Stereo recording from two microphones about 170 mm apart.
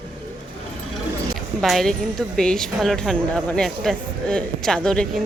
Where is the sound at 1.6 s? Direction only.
Centre (ahead or behind).